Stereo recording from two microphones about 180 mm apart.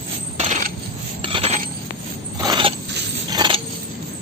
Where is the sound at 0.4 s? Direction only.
45° right (ahead or behind).